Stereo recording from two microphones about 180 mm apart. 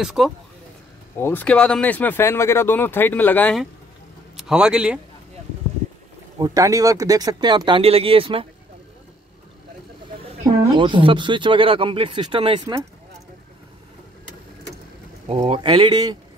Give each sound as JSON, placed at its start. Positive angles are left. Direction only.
{"t": 0.0, "sound": "a man's voice", "side_deg": -5}
{"t": 1.1, "sound": "speech", "side_deg": 10}
{"t": 4.4, "sound": "a man's voice", "side_deg": -5}
{"t": 6.3, "sound": "speech", "side_deg": -20}
{"t": 10.6, "sound": "speech", "side_deg": -25}
{"t": 15.2, "sound": "speech", "side_deg": -35}